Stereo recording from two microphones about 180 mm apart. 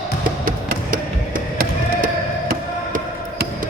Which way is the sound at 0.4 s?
50° right (ahead or behind).